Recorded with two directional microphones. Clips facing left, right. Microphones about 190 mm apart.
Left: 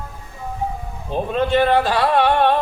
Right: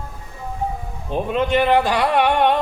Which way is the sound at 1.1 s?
15° right (ahead or behind).